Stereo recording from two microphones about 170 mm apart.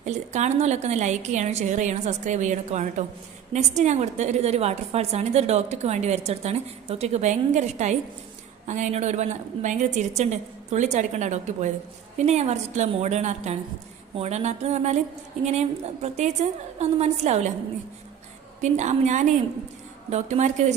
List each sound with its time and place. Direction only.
0.0 s a woman's voice: 40° right (ahead or behind)
18.6 s a woman's voice: 45° right (ahead or behind)